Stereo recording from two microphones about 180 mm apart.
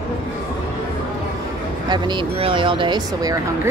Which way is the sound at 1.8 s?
25° right (ahead or behind).